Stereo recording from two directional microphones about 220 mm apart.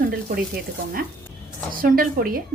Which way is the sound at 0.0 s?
45° right (ahead or behind).